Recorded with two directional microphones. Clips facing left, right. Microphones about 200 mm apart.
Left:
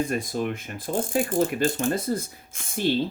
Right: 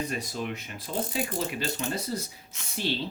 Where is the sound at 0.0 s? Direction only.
50° left (ahead or behind).